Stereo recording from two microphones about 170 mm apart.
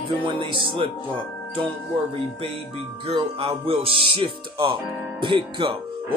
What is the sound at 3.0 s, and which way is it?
Speech, 35° right (ahead or behind).